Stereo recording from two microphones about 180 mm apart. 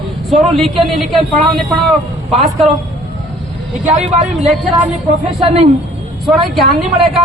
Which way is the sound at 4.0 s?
40° right (ahead or behind).